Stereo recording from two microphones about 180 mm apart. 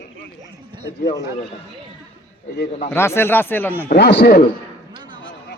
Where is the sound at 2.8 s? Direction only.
15° left (ahead or behind).